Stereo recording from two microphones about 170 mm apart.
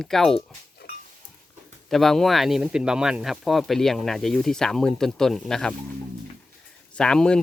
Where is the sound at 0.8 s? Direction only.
75° left (ahead or behind).